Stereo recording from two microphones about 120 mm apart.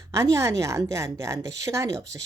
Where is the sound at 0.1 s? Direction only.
25° right (ahead or behind).